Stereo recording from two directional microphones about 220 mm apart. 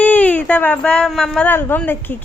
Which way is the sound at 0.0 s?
5° left (ahead or behind).